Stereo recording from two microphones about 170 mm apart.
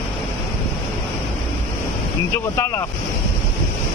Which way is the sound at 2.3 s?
15° left (ahead or behind).